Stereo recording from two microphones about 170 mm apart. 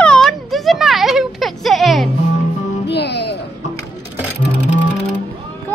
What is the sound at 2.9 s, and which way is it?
Speech, 85° left.